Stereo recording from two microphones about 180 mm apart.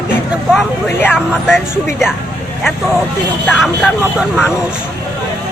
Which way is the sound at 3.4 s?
10° left (ahead or behind).